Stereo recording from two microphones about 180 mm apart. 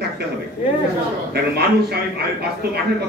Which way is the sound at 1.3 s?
60° right (ahead or behind).